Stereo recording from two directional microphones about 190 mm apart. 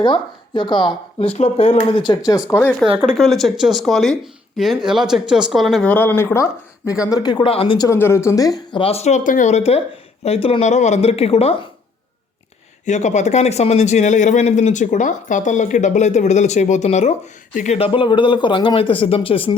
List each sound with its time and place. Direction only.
0.0 s speech: 25° left (ahead or behind)
2.5 s speech: 10° left (ahead or behind)
2.8 s speech: 5° right (ahead or behind)
5.9 s speech: 10° left (ahead or behind); by 7.9 s 30° left (ahead or behind)
7.9 s speech: 15° left (ahead or behind); by 11.7 s 30° left (ahead or behind)
12.8 s speech: 40° left (ahead or behind)